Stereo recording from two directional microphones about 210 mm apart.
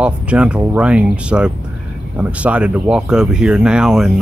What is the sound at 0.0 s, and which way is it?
Speech, 5° right (ahead or behind).